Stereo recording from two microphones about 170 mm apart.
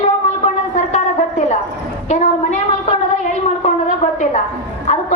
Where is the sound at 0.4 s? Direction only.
45° left (ahead or behind).